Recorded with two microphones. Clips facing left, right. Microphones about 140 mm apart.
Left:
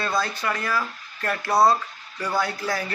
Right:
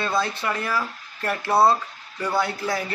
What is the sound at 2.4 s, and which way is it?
Speech, 25° right (ahead or behind).